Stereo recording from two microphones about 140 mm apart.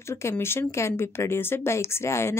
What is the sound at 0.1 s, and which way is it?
Speech, 20° left (ahead or behind).